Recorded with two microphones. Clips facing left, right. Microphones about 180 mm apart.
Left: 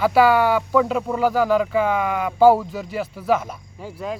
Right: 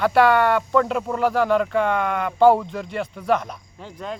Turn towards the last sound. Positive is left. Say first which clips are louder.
# left 3 dB
turn(degrees=5)  # may be behind; listen again after turning